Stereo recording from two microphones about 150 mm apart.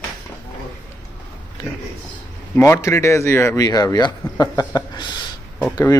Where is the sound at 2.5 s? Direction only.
20° left (ahead or behind).